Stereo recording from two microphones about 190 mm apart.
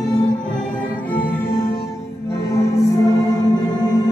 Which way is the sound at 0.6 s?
10° left (ahead or behind).